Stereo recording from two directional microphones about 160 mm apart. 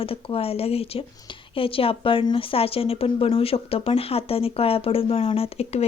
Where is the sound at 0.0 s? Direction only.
35° left (ahead or behind).